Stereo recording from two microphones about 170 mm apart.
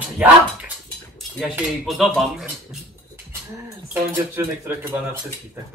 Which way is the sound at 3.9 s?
10° right (ahead or behind).